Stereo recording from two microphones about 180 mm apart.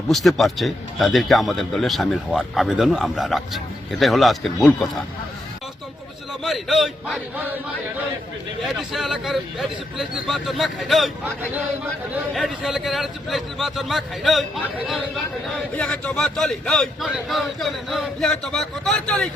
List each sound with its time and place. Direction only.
0.1 s a man's voice: centre (ahead or behind)
6.4 s a man's voice: centre (ahead or behind)
8.6 s a man's voice: centre (ahead or behind)
12.3 s a man's voice: centre (ahead or behind)